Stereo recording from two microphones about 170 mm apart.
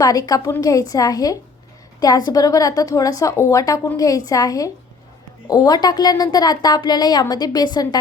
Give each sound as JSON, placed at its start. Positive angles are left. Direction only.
{"t": 0.0, "sound": "a woman's voice", "side_deg": 20}